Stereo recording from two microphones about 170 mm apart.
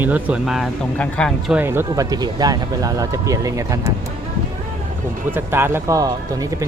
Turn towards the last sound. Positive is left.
turn(degrees=-20)  # may be behind; listen again after turning